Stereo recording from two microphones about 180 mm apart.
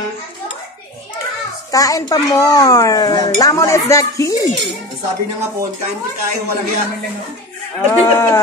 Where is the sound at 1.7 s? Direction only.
20° left (ahead or behind).